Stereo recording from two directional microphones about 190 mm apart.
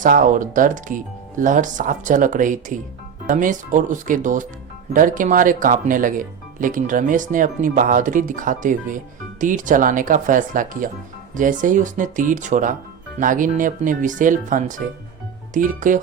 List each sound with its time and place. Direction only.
0.0 s speech: 45° right (ahead or behind)